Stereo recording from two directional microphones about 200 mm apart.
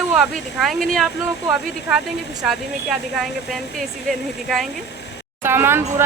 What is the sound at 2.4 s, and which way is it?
Speech, centre (ahead or behind).